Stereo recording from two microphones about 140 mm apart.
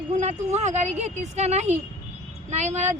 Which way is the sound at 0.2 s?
55° right (ahead or behind).